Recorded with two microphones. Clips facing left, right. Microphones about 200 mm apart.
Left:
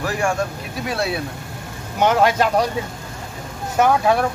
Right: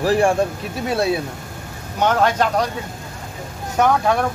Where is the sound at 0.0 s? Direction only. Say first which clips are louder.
Right 6 dB; 35° right (ahead or behind).